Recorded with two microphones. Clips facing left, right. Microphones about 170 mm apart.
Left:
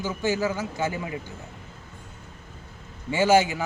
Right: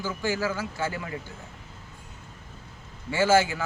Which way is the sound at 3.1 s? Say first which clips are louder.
Left 2 dB; 20° left (ahead or behind).